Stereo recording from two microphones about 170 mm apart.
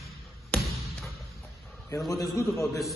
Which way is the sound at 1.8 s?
20° left (ahead or behind).